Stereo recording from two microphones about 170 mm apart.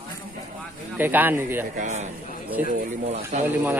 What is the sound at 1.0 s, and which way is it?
Speech, 10° right (ahead or behind).